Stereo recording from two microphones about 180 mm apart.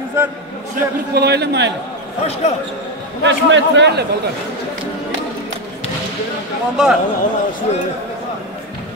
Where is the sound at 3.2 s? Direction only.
85° right.